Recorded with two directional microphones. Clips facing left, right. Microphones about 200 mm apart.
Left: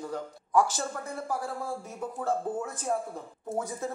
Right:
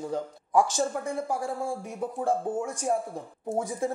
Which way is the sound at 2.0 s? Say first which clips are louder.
Right 3 dB; 15° right (ahead or behind).